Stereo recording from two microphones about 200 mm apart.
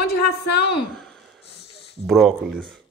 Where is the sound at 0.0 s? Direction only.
55° left (ahead or behind).